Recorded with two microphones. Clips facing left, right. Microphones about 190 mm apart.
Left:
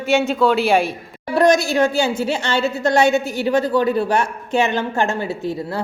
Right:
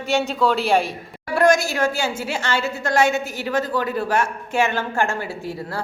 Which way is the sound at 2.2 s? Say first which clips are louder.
Left 4 dB; 25° left (ahead or behind).